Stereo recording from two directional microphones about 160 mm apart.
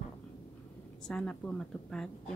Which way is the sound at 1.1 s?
5° left (ahead or behind).